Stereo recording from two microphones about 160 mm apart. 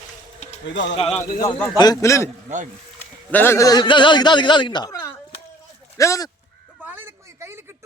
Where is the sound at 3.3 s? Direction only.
15° left (ahead or behind).